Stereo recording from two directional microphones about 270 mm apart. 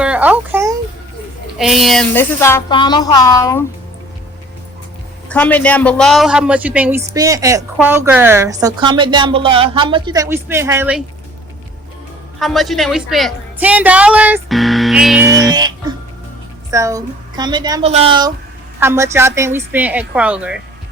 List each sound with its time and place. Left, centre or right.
0.0 s a sound: centre
1.5 s a woman's voice: centre
5.3 s speech: centre
12.4 s a woman's voice: centre
15.4 s speech: centre
16.7 s speech: centre